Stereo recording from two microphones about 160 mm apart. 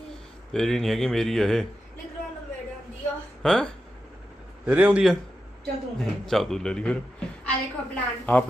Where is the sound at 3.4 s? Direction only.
5° left (ahead or behind).